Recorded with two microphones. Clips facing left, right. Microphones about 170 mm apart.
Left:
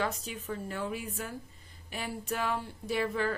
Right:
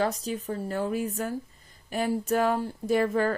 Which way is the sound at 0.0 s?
35° right (ahead or behind).